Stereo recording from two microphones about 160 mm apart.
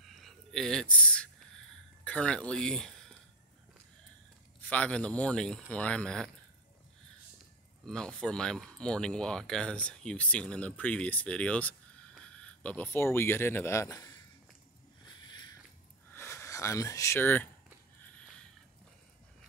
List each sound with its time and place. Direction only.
0.0 s a sound: centre (ahead or behind)
2.0 s speech: 5° left (ahead or behind)
4.6 s speech: 10° left (ahead or behind)
7.8 s speech: 5° left (ahead or behind); by 14.1 s 20° left (ahead or behind)
15.2 s a sound: 30° left (ahead or behind)
16.1 s speech: 15° left (ahead or behind)